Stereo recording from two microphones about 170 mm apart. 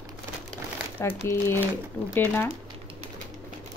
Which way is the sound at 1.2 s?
15° left (ahead or behind).